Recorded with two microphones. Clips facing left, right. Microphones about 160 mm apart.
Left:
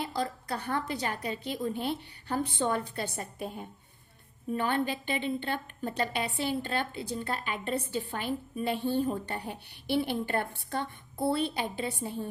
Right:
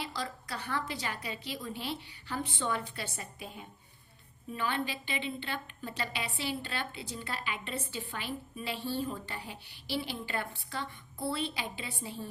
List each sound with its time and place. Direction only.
0.0 s a woman's voice: 55° left (ahead or behind)